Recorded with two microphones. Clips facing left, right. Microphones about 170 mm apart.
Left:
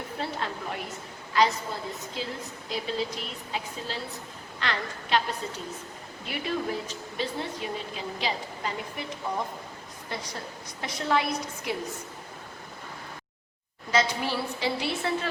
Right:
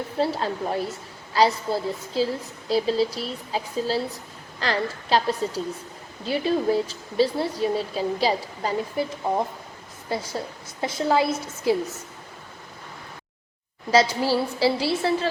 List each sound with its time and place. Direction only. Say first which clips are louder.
0.2 s a woman's voice: right 9 dB; 35° right (ahead or behind)
10.8 s a woman's voice: right 6 dB; 25° right (ahead or behind)
13.9 s a woman's voice: right 7 dB; 35° right (ahead or behind)